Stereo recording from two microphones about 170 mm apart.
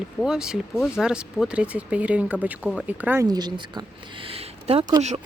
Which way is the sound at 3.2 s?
25° right (ahead or behind).